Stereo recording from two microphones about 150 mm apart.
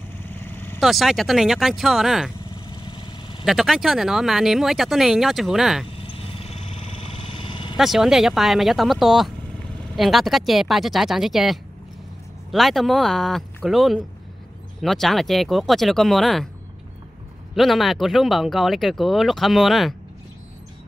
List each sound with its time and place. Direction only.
0.2 s vehicle: 15° left (ahead or behind)
0.7 s speech: centre (ahead or behind)
2.4 s vehicle: 30° left (ahead or behind)
3.4 s speech: centre (ahead or behind)
5.9 s vehicle: 35° left (ahead or behind)
7.7 s speech: centre (ahead or behind)
17.6 s speech: centre (ahead or behind)